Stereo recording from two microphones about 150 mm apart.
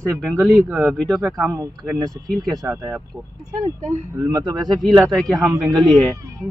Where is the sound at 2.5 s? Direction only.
20° right (ahead or behind).